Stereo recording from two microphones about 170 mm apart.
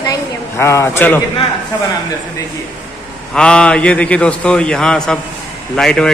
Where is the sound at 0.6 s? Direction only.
15° left (ahead or behind).